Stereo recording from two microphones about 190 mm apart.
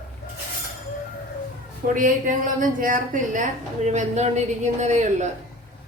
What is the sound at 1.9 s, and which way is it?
A woman's voice, 45° right (ahead or behind).